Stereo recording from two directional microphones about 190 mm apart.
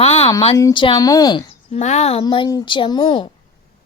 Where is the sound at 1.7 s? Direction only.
35° left (ahead or behind).